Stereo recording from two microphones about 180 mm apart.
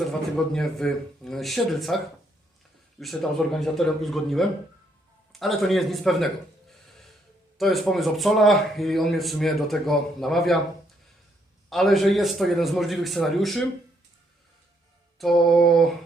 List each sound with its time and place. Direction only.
0.0 s speech: centre (ahead or behind)
3.0 s speech: centre (ahead or behind)
5.3 s a sound: centre (ahead or behind)
7.6 s speech: centre (ahead or behind)
11.7 s speech: centre (ahead or behind)
15.2 s speech: centre (ahead or behind)